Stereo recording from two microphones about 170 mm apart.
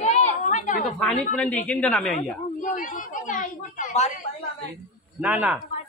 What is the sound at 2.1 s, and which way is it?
Speech, 50° left (ahead or behind).